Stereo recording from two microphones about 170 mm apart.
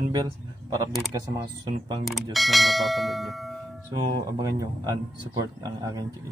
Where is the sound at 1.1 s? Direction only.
25° right (ahead or behind).